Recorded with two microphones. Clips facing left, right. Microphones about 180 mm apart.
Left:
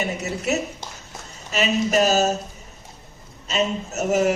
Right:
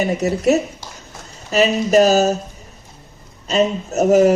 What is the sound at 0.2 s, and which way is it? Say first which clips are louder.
Speech: right 9 dB; 35° right (ahead or behind).